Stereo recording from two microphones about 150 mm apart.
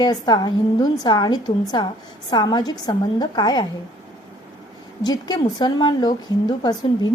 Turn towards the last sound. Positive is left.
turn(degrees=30)  # may be behind; listen again after turning